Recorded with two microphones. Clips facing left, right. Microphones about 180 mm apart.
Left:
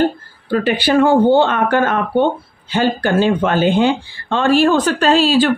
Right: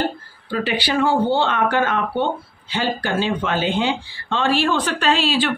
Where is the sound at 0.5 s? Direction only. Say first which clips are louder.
Left 7 dB; 50° left (ahead or behind).